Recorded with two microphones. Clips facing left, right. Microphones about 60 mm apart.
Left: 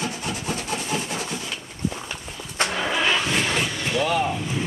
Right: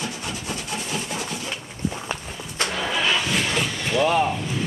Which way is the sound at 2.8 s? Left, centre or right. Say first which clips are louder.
Even; centre.